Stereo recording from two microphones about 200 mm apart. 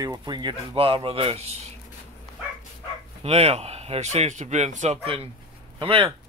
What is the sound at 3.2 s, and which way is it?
Speech, 30° right (ahead or behind).